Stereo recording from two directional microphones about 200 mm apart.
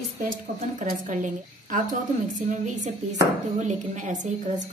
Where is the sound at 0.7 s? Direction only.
40° right (ahead or behind).